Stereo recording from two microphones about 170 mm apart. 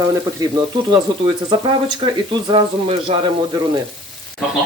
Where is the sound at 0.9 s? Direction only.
25° right (ahead or behind).